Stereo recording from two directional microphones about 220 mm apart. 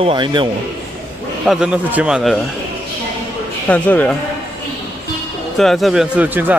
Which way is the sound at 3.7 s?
5° left (ahead or behind).